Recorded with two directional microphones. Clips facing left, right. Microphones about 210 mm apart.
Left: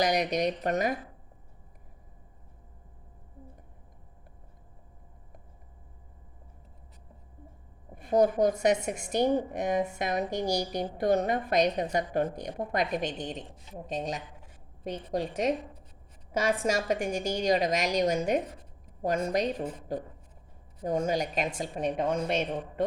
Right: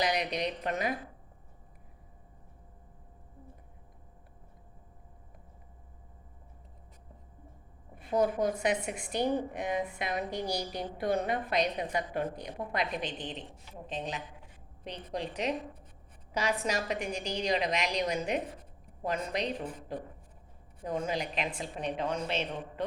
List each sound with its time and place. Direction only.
0.0 s a woman's voice: 45° left (ahead or behind)
7.9 s a woman's voice: 45° left (ahead or behind)
20.8 s a woman's voice: 45° left (ahead or behind)